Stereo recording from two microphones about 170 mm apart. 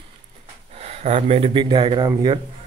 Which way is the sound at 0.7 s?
40° right (ahead or behind).